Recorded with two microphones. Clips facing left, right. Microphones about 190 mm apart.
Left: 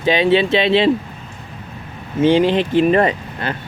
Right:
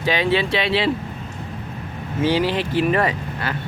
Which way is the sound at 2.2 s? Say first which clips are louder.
Left 6 dB; 20° left (ahead or behind).